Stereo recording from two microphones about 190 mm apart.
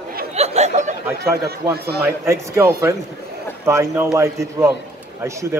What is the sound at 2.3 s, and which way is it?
A man's voice, 15° right (ahead or behind).